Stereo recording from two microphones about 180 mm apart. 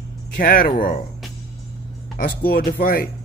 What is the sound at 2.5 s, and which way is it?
Speech, 55° left (ahead or behind).